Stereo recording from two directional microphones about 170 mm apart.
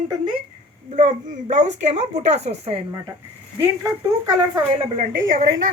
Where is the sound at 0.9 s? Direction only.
50° right (ahead or behind).